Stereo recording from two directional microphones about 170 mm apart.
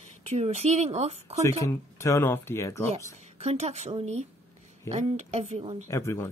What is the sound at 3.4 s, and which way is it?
A woman's voice, 40° right (ahead or behind).